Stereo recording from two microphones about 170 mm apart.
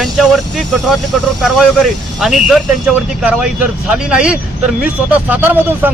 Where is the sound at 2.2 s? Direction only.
Centre (ahead or behind).